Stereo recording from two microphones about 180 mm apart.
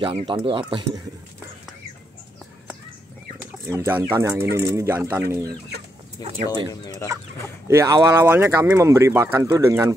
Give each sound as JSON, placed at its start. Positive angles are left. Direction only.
{"t": 0.0, "sound": "speech", "side_deg": -30}
{"t": 3.6, "sound": "speech", "side_deg": -15}
{"t": 6.2, "sound": "chicken", "side_deg": 20}
{"t": 7.6, "sound": "speech", "side_deg": -15}